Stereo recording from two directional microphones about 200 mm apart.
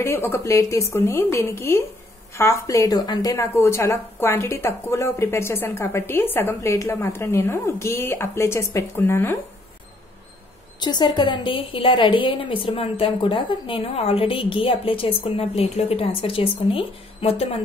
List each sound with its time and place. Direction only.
0.0 s a woman's voice: 10° left (ahead or behind)
10.8 s a woman's voice: 20° left (ahead or behind)